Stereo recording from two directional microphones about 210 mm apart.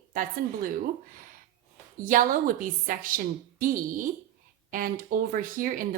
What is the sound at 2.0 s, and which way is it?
Speech, 40° right (ahead or behind).